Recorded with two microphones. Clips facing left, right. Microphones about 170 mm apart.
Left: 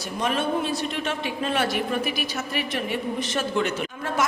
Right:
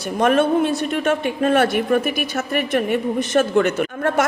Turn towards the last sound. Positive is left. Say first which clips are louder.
# right 8 dB
turn(degrees=-60)  # may be behind; listen again after turning